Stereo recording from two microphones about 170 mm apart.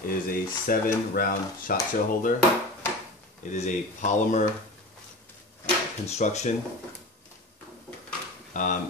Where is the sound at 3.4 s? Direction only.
45° left (ahead or behind).